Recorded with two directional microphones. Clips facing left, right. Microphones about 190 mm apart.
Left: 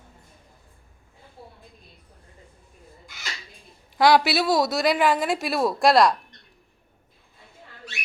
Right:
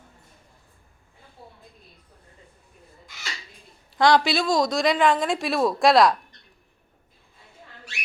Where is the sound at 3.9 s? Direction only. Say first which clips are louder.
Left 1 dB; 5° left (ahead or behind).